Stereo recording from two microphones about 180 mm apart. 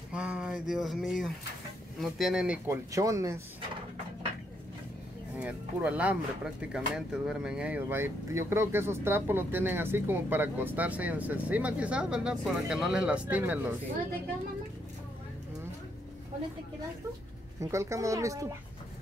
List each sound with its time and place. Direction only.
0.1 s a sound: 5° right (ahead or behind)
2.0 s speech: centre (ahead or behind); by 3.3 s 20° right (ahead or behind)
5.3 s speech: 10° right (ahead or behind)
17.6 s speech: 15° right (ahead or behind)